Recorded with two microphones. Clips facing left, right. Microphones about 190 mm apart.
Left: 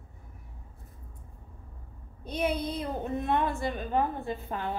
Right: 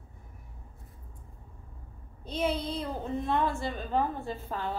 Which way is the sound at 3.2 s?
20° left (ahead or behind).